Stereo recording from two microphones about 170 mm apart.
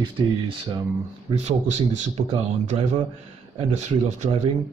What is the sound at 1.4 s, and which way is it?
Speech, 40° right (ahead or behind).